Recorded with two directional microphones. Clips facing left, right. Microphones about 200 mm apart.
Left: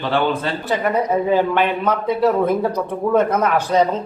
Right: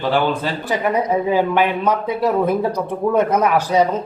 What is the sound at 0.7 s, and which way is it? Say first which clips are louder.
Speech: even; 10° right (ahead or behind).